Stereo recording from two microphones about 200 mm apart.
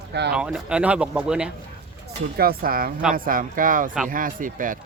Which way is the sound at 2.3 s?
50° right (ahead or behind).